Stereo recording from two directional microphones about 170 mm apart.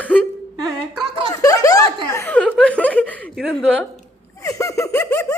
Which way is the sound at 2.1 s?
10° left (ahead or behind).